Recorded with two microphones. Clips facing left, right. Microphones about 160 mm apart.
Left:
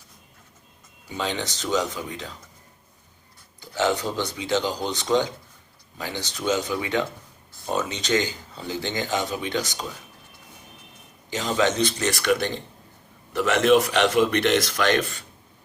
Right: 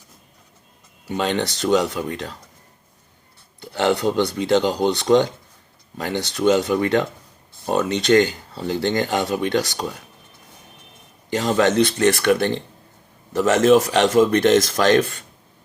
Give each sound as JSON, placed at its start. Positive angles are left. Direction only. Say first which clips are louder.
{"t": 1.0, "sound": "speech", "louder": "right 7 dB", "side_deg": -65}
{"t": 3.6, "sound": "speech", "louder": "right 4 dB", "side_deg": -65}
{"t": 11.3, "sound": "speech", "louder": "right 5 dB", "side_deg": -55}